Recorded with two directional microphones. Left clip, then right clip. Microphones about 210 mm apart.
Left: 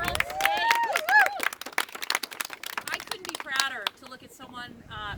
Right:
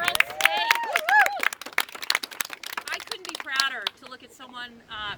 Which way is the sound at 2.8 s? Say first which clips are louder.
Right 1 dB; 40° left (ahead or behind).